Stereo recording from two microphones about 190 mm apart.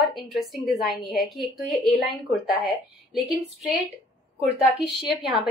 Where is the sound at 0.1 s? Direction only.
Centre (ahead or behind).